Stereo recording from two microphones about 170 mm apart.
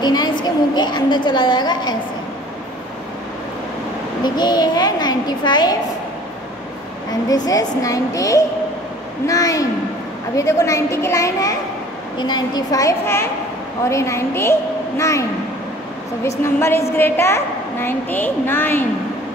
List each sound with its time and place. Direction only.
0.0 s a woman's voice: 25° left (ahead or behind)
4.2 s a child's voice: 25° left (ahead or behind)
7.1 s a child's voice: 20° left (ahead or behind)
16.3 s a woman's voice: 15° left (ahead or behind)